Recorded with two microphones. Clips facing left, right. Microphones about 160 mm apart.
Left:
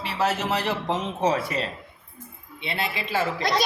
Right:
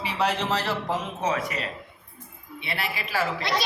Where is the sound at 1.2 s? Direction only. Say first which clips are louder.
Left 3 dB; 30° left (ahead or behind).